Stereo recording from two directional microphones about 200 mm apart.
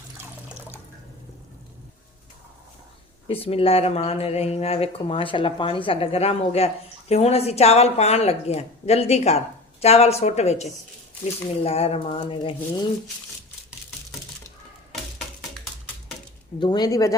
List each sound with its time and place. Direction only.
3.2 s speech: 30° left (ahead or behind)
16.6 s speech: 20° left (ahead or behind)